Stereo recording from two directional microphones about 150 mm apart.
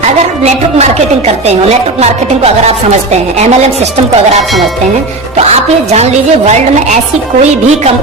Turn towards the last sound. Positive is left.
turn(degrees=-50)  # may be behind; listen again after turning